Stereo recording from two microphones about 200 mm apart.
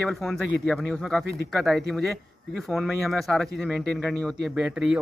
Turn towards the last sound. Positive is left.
turn(degrees=-5)  # may be behind; listen again after turning